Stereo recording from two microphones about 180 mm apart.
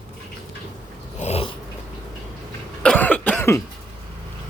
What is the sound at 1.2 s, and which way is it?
Dog, 35° left (ahead or behind).